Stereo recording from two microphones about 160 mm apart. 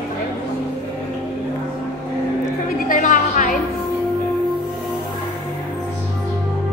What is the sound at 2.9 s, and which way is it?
Music, 55° left (ahead or behind).